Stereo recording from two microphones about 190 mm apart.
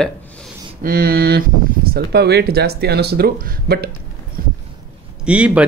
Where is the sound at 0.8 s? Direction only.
55° right (ahead or behind).